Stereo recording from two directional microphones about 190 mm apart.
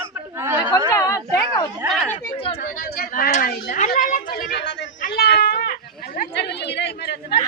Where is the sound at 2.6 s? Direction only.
50° left (ahead or behind); by 4.8 s 65° left (ahead or behind).